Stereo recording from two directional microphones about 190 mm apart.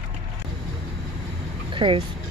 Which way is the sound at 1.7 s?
25° right (ahead or behind).